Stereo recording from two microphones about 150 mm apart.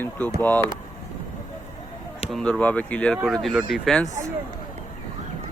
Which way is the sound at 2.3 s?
5° left (ahead or behind).